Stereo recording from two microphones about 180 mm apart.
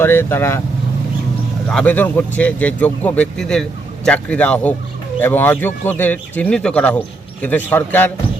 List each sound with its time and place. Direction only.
0.0 s speech: 15° left (ahead or behind)
1.7 s speech: 10° left (ahead or behind)